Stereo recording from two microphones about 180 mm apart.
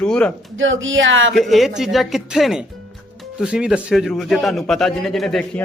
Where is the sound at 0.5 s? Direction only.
90° right.